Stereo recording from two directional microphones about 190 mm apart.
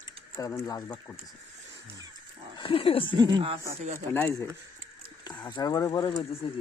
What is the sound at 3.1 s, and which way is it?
Speech, 25° right (ahead or behind).